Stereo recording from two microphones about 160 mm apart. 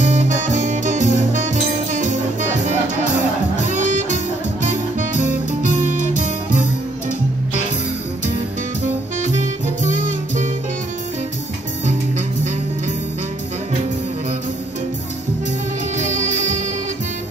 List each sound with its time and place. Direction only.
0.0 s music: 50° right (ahead or behind)
9.8 s music: 50° right (ahead or behind)
16.0 s music: 50° right (ahead or behind)